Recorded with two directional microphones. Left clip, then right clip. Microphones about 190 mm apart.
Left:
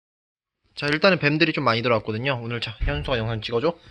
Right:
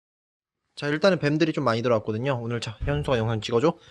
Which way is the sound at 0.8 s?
5° right (ahead or behind).